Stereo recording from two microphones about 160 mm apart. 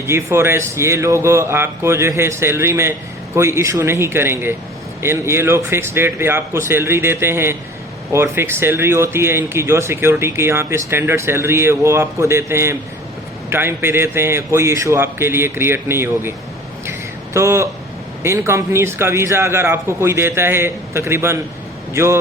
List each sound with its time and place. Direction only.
0.1 s speech: 15° right (ahead or behind)
17.3 s speech: 15° right (ahead or behind)